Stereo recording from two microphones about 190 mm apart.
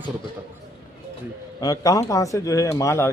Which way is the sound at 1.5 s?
20° left (ahead or behind).